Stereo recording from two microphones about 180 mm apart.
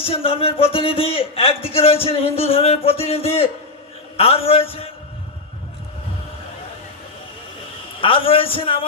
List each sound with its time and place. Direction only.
0.0 s a man's voice: 30° left (ahead or behind)
8.0 s a man's voice: 30° left (ahead or behind)